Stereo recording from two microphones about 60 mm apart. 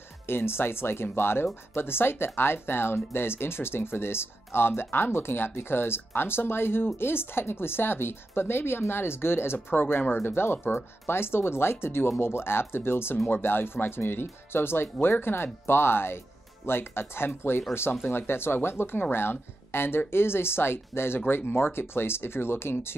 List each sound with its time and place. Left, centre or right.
0.3 s speech: left